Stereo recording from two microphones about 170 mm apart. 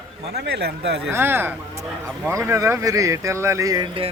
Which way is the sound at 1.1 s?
15° right (ahead or behind).